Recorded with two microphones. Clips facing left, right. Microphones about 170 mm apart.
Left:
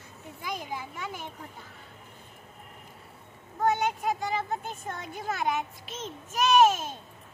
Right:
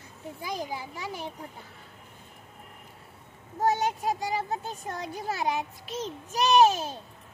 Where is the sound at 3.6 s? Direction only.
40° right (ahead or behind).